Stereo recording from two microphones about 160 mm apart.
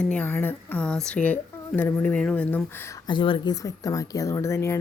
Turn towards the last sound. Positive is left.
turn(degrees=15)  # may be behind; listen again after turning